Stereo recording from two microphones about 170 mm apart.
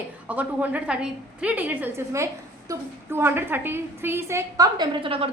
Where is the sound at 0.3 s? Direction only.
10° right (ahead or behind).